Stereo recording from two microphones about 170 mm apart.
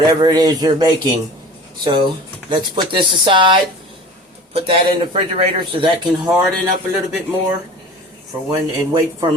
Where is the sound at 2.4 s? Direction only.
25° right (ahead or behind).